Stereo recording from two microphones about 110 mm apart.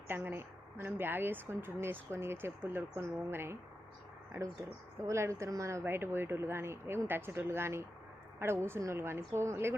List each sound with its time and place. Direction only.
0.1 s speech: 20° right (ahead or behind)
5.0 s speech: 25° right (ahead or behind)